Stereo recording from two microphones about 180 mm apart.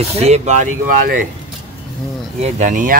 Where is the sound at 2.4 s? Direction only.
45° right (ahead or behind).